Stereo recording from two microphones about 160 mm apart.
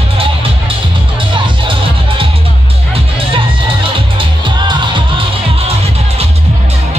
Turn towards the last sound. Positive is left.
turn(degrees=-30)  # may be behind; listen again after turning